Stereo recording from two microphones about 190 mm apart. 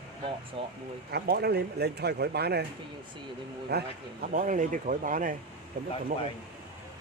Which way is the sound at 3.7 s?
55° right (ahead or behind).